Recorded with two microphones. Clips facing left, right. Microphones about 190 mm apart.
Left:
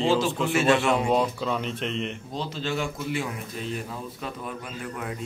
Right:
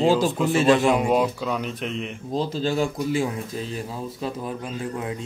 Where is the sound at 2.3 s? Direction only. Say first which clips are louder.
Right 8 dB; 35° right (ahead or behind).